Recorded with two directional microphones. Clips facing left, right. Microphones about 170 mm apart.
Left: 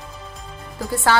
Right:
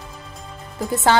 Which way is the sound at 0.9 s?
20° right (ahead or behind).